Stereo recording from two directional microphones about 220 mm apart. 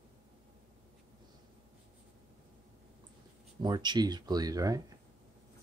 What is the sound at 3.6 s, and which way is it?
Speech, 20° right (ahead or behind).